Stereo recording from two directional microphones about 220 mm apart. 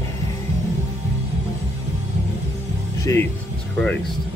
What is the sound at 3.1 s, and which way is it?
Speech, 10° left (ahead or behind).